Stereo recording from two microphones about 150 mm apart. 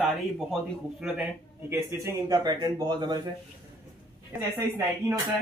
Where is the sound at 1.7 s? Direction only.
20° right (ahead or behind).